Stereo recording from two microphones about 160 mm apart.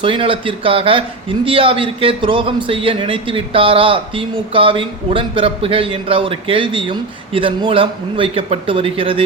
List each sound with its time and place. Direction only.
0.0 s a man's voice: 35° right (ahead or behind)